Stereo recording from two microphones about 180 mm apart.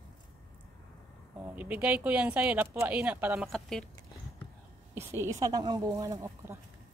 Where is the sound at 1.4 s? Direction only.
10° right (ahead or behind).